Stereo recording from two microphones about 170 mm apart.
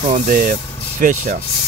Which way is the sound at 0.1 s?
55° right (ahead or behind).